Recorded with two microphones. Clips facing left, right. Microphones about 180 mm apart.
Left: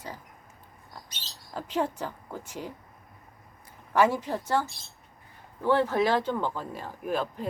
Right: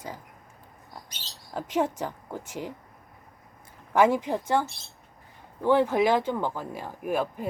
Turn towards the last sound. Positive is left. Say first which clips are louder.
# right 2 dB
turn(degrees=-10)  # may be behind; listen again after turning